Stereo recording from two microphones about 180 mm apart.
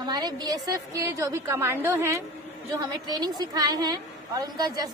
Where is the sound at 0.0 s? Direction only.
20° right (ahead or behind).